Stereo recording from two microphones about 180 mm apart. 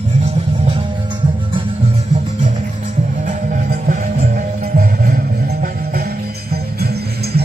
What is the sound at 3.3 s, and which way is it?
Music, 45° right (ahead or behind).